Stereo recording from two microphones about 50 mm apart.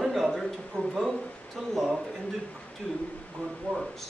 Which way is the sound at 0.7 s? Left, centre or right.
Centre.